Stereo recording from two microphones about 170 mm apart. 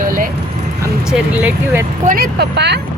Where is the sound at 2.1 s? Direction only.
60° right (ahead or behind); by 2.8 s 80° right.